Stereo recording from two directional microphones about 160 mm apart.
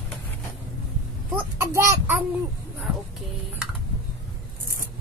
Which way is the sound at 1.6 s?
15° right (ahead or behind).